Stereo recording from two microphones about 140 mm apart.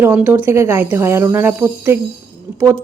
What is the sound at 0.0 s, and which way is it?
A woman's voice, 15° right (ahead or behind).